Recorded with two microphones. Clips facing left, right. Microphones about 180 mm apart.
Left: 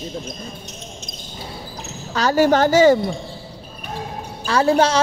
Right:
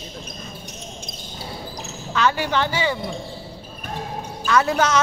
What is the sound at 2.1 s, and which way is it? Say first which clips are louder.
A woman's voice: left 6 dB; 40° left (ahead or behind).